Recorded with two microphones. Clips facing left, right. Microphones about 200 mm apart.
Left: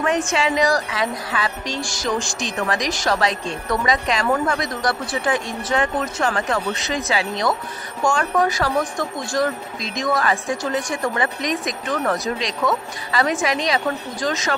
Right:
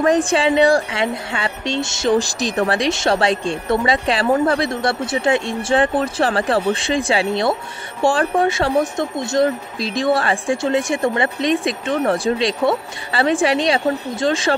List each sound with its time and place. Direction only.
0.0 s a woman's voice: 35° right (ahead or behind)